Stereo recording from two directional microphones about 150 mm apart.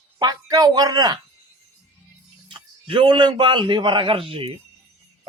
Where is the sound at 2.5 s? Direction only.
35° right (ahead or behind).